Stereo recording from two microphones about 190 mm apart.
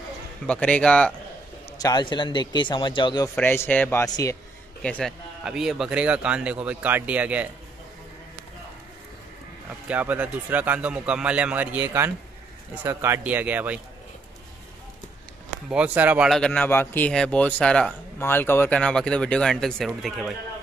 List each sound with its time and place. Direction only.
0.5 s speech: 5° left (ahead or behind)
1.7 s a man's voice: 20° left (ahead or behind)
3.3 s speech: 10° left (ahead or behind)
4.8 s speech: 5° left (ahead or behind)
9.8 s speech: 10° right (ahead or behind)
15.7 s speech: 10° right (ahead or behind)